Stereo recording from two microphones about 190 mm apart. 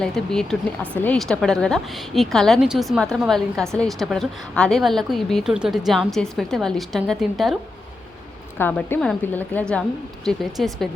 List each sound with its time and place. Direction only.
0.0 s a woman's voice: 5° left (ahead or behind)
8.5 s a woman's voice: 10° left (ahead or behind)